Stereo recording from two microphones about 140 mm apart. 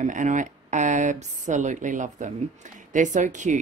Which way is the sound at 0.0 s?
65° right (ahead or behind).